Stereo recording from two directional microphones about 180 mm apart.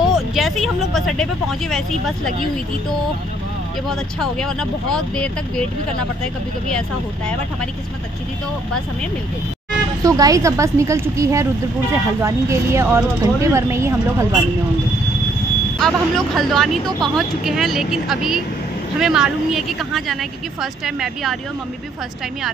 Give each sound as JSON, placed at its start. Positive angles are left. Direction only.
{"t": 0.1, "sound": "speech", "side_deg": 0}
{"t": 3.9, "sound": "speech", "side_deg": 5}
{"t": 10.0, "sound": "speech", "side_deg": -20}
{"t": 15.8, "sound": "speech", "side_deg": 0}